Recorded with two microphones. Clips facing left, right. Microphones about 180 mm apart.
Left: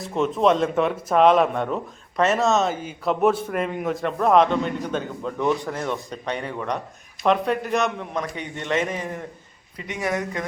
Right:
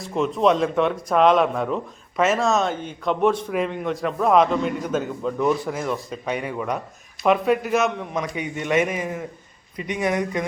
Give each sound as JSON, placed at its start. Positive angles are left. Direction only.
{"t": 0.0, "sound": "speech", "side_deg": 0}